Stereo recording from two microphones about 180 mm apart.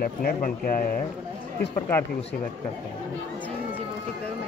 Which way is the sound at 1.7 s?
15° left (ahead or behind).